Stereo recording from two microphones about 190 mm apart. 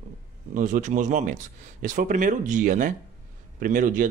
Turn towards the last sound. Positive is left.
turn(degrees=-45)  # may be behind; listen again after turning